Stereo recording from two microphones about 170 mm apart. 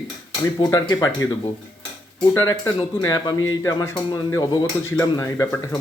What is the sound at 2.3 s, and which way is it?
Speech, 15° left (ahead or behind).